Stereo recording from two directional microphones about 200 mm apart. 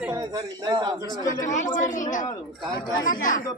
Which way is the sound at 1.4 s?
40° left (ahead or behind).